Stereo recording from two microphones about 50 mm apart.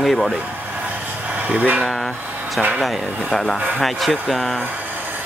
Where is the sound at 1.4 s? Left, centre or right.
Right.